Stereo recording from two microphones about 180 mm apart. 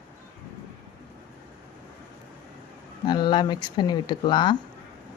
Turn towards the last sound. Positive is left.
turn(degrees=25)  # may be behind; listen again after turning